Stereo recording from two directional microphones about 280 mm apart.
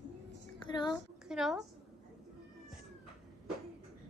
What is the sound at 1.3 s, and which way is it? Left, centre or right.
Speech, centre.